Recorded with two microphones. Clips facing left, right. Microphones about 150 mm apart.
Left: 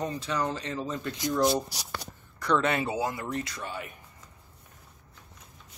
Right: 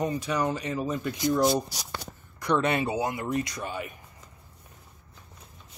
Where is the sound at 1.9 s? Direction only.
15° right (ahead or behind).